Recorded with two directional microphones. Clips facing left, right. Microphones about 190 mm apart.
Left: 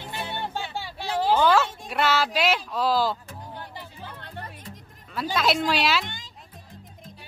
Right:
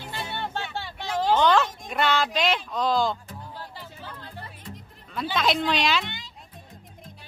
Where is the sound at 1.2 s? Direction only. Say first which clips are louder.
Even; 10° left (ahead or behind).